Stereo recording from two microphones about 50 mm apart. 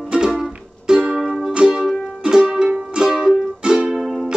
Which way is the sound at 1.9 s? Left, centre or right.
Centre.